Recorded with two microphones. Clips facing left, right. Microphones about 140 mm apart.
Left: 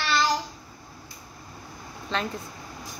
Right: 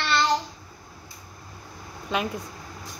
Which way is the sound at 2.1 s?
10° right (ahead or behind).